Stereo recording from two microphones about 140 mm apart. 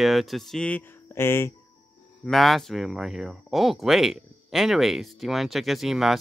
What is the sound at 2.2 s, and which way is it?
Speech, centre (ahead or behind).